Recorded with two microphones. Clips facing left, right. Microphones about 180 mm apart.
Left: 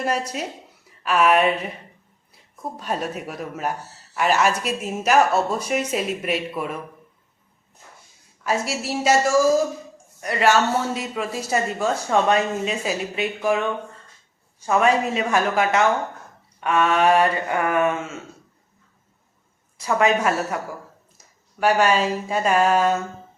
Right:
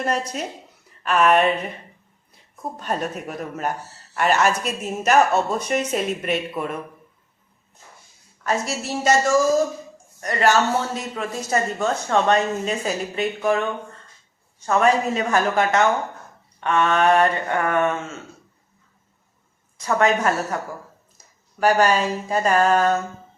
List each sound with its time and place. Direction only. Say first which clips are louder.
0.0 s a woman's voice: even; 5° left (ahead or behind)
8.6 s speech: even; 5° left (ahead or behind)
14.7 s a woman's voice: even; 5° left (ahead or behind)
19.8 s speech: even; 5° left (ahead or behind)
21.6 s a woman's voice: right 1 dB; centre (ahead or behind)